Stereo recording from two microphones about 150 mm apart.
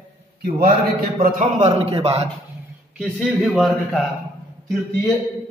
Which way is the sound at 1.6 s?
40° right (ahead or behind).